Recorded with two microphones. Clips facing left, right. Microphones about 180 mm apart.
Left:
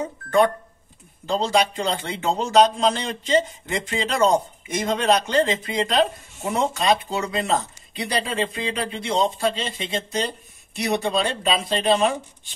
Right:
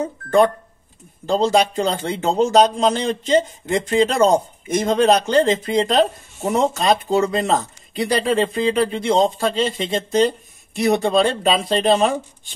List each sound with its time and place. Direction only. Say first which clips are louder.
1.2 s speech: right 4 dB; 45° right (ahead or behind)